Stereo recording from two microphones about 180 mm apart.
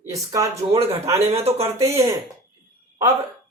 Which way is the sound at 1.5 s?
35° right (ahead or behind).